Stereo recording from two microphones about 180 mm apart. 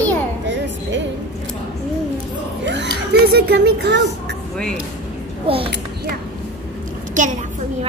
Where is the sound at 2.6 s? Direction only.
75° right (ahead or behind).